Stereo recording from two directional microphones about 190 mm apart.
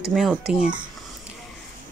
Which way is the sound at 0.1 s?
5° right (ahead or behind).